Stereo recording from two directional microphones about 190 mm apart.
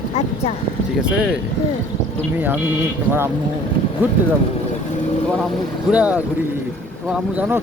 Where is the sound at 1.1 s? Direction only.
5° right (ahead or behind).